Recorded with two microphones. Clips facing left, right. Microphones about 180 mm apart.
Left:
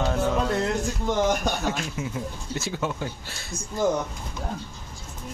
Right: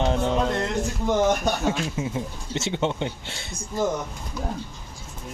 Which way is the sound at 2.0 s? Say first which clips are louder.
Right 3 dB; 25° right (ahead or behind).